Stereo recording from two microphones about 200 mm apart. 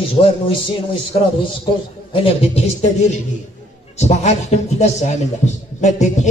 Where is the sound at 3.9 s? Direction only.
35° left (ahead or behind).